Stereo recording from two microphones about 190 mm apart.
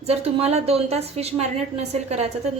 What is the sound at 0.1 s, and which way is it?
A woman's voice, 35° right (ahead or behind).